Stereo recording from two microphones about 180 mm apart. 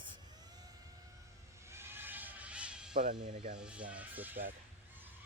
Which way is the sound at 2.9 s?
50° right (ahead or behind).